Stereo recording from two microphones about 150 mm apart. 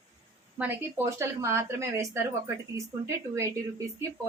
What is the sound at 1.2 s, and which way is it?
A woman's voice, 20° right (ahead or behind).